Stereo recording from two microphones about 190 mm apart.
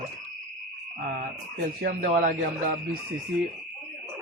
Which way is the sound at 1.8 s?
50° right (ahead or behind).